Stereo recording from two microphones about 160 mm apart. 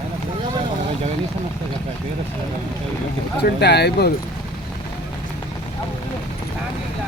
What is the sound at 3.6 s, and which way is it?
Speech, 90° left.